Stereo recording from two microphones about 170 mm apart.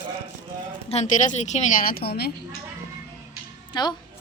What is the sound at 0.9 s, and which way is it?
A woman's voice, 45° left (ahead or behind).